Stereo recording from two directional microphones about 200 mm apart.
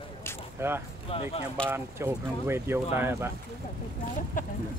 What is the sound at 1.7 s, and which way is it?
Speech, 10° right (ahead or behind).